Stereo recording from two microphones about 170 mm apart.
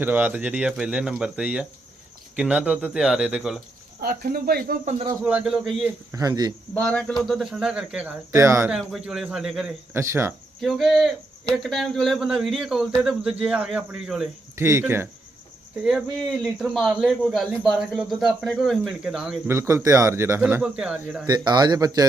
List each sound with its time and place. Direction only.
0.0 s speech: 10° right (ahead or behind)
4.0 s speech: 65° right (ahead or behind)
5.2 s speech: 5° right (ahead or behind)
6.1 s a man's voice: 20° right (ahead or behind)
6.7 s speech: 5° left (ahead or behind)
8.3 s speech: 20° right (ahead or behind)
8.6 s speech: 5° right (ahead or behind)
9.9 s speech: 15° right (ahead or behind)
10.6 s speech: centre (ahead or behind)
14.5 s speech: 15° right (ahead or behind)
15.8 s speech: 5° right (ahead or behind)
19.5 s speech: 15° right (ahead or behind)
21.2 s a man's voice: 25° right (ahead or behind)